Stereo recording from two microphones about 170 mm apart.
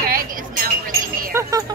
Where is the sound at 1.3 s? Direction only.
20° right (ahead or behind).